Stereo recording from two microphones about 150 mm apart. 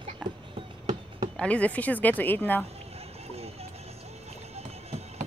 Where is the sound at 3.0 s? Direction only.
45° right (ahead or behind).